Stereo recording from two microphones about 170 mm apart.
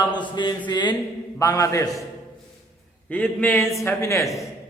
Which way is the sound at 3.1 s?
10° left (ahead or behind).